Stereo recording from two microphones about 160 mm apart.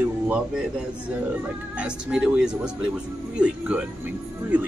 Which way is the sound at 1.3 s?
5° right (ahead or behind).